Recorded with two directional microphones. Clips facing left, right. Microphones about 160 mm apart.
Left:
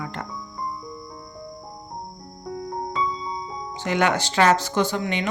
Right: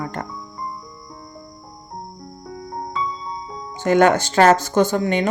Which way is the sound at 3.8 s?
45° right (ahead or behind).